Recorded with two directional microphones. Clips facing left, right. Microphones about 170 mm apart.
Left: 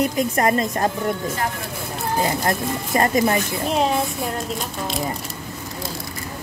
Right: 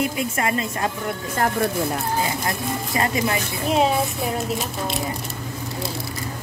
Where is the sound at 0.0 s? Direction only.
40° left (ahead or behind).